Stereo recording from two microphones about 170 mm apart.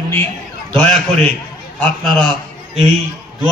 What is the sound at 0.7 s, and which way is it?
A man's voice, 5° left (ahead or behind).